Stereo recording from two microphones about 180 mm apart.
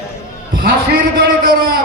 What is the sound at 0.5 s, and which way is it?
A man's voice, 55° right (ahead or behind).